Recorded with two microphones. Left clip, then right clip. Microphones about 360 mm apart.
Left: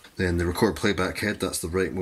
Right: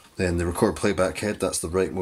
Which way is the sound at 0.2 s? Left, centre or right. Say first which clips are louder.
Right 1 dB; centre.